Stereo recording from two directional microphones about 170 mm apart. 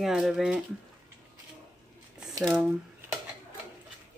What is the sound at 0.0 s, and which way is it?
Speech, centre (ahead or behind).